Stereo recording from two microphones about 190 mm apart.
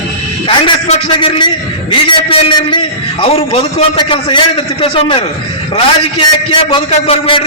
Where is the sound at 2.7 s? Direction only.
25° left (ahead or behind).